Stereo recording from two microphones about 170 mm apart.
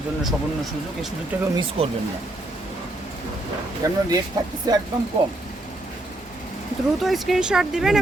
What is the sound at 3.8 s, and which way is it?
Speech, 20° right (ahead or behind).